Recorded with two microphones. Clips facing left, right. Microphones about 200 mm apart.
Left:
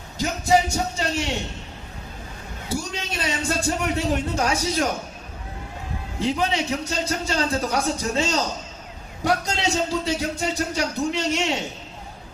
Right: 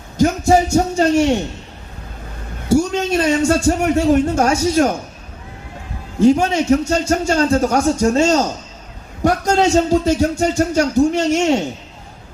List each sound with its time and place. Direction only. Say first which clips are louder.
0.2 s a man's voice: right 7 dB; 50° right (ahead or behind)
2.6 s speech: right 14 dB; 50° right (ahead or behind)
6.1 s speech: right 10 dB; 45° right (ahead or behind)